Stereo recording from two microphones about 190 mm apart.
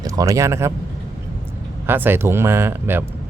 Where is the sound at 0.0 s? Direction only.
20° right (ahead or behind).